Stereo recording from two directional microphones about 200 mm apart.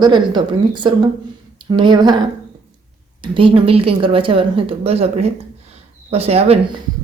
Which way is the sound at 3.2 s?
25° right (ahead or behind).